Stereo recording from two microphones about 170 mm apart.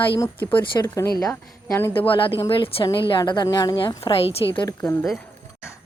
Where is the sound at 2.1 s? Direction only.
30° left (ahead or behind).